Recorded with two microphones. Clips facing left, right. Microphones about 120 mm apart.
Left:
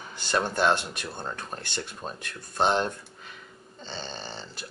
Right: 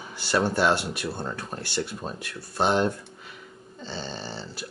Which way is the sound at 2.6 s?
10° right (ahead or behind).